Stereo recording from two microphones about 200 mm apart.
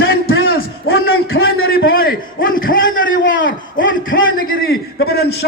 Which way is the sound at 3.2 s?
70° left (ahead or behind).